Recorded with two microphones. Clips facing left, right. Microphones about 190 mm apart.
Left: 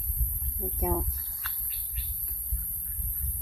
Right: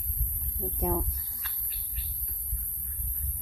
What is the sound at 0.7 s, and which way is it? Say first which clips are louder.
Speech: even; 5° left (ahead or behind).